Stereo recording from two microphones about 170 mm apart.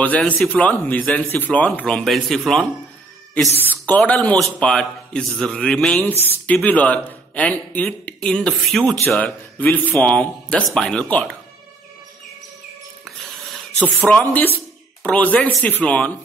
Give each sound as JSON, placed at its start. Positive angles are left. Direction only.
{"t": 0.0, "sound": "a man's voice", "side_deg": 10}
{"t": 13.0, "sound": "a sound", "side_deg": 0}
{"t": 15.0, "sound": "speech", "side_deg": 10}